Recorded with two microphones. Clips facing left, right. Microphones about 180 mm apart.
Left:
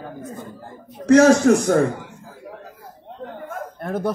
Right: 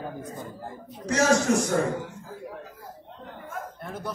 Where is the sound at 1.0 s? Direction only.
60° left (ahead or behind).